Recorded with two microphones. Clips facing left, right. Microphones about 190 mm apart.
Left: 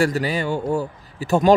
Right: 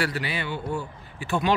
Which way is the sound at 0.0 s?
40° left (ahead or behind).